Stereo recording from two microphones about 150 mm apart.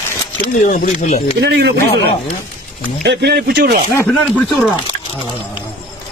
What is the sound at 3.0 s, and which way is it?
Speech, 90° right.